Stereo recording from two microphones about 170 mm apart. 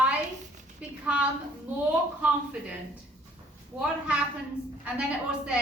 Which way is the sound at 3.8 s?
5° right (ahead or behind).